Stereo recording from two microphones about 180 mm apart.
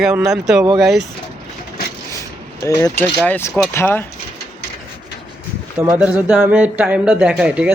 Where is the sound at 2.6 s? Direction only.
15° left (ahead or behind).